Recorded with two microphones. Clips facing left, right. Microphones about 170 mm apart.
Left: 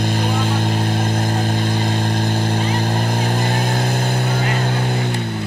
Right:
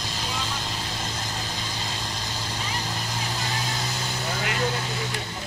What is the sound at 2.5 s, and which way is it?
Vehicle, 55° left (ahead or behind).